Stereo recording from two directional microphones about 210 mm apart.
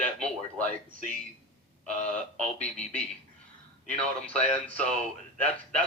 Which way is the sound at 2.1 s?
5° left (ahead or behind).